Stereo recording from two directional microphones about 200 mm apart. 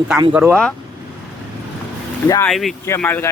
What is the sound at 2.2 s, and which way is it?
Speech, 15° left (ahead or behind).